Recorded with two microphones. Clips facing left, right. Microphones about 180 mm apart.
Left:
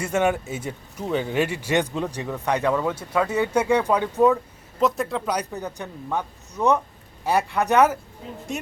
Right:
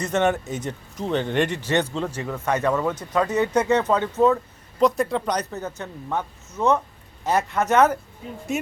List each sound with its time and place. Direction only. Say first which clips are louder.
0.0 s speech: even; 10° left (ahead or behind)
4.8 s speech: right 3 dB; centre (ahead or behind)